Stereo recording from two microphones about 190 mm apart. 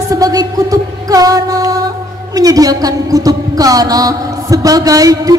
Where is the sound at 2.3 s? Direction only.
20° right (ahead or behind).